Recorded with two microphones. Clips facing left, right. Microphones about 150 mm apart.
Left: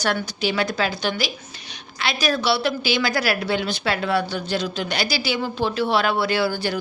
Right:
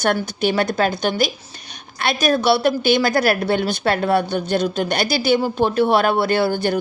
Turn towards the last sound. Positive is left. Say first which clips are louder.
# right 4 dB
turn(degrees=-50)  # may be behind; listen again after turning